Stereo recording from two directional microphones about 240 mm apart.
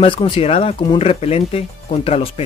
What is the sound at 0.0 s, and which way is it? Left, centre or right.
Speech, left.